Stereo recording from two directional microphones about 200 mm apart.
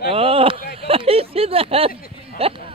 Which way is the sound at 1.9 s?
45° left (ahead or behind).